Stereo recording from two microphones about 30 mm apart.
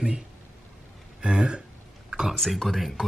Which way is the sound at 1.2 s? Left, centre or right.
Right.